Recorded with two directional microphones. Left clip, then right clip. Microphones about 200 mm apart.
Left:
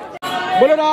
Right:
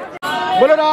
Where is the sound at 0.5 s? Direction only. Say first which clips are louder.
Right 1 dB; 20° right (ahead or behind).